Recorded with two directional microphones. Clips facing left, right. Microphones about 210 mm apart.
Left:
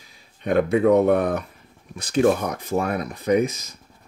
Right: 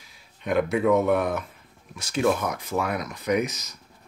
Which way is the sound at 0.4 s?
30° left (ahead or behind).